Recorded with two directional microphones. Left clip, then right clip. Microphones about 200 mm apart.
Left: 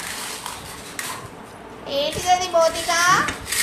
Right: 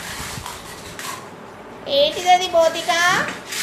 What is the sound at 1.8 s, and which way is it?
Child singing, 15° right (ahead or behind).